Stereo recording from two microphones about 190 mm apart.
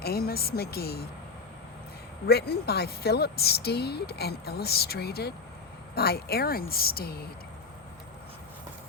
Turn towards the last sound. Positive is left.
turn(degrees=55)  # may be behind; listen again after turning